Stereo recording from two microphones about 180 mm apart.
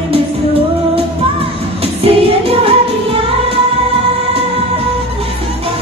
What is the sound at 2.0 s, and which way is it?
Music, 30° right (ahead or behind).